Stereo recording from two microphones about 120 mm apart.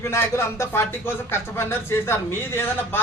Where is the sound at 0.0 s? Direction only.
20° left (ahead or behind).